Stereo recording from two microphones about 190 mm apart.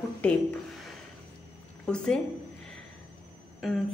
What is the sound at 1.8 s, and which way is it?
Speech, 5° left (ahead or behind).